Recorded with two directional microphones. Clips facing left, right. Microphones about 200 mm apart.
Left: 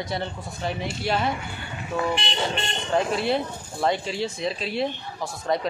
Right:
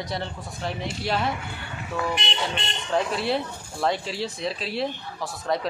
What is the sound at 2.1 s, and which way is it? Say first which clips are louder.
Speech: left 2 dB; 40° left (ahead or behind).